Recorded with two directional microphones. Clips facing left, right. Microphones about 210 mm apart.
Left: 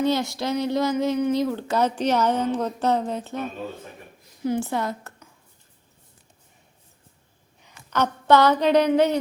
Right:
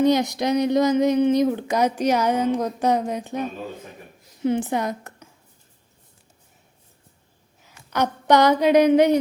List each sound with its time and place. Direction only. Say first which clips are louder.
0.0 s speech: right 4 dB; 15° right (ahead or behind)
4.4 s a woman's voice: right 3 dB; 20° right (ahead or behind)
7.6 s a woman's voice: right 1 dB; 10° right (ahead or behind)